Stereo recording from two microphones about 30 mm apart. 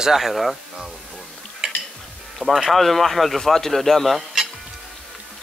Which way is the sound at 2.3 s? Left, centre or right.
Centre.